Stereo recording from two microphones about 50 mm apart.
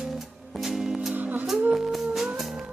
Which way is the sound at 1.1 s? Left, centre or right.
Right.